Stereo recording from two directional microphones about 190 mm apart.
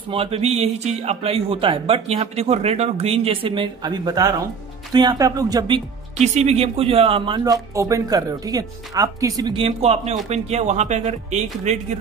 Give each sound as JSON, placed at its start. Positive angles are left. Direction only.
{"t": 0.1, "sound": "speech", "side_deg": -30}
{"t": 6.1, "sound": "speech", "side_deg": -35}